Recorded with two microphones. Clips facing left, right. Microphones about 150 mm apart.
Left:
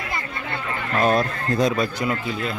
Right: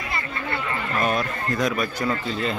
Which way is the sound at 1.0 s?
30° left (ahead or behind).